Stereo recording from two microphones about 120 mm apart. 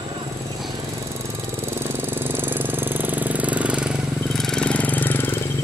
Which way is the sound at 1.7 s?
20° right (ahead or behind).